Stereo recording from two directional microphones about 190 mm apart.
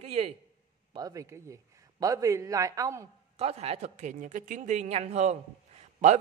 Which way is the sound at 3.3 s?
30° right (ahead or behind).